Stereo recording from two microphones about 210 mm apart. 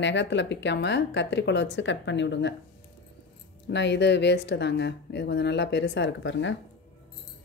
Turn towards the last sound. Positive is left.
turn(degrees=60)  # may be behind; listen again after turning